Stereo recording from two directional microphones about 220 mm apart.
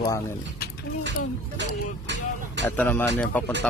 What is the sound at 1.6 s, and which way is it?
Speech, 55° right (ahead or behind).